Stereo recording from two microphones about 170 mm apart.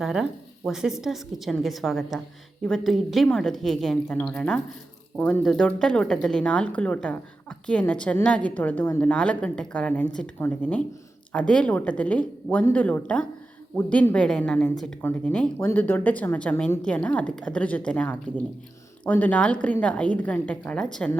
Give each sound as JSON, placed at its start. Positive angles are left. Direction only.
{"t": 0.0, "sound": "a woman's voice", "side_deg": 0}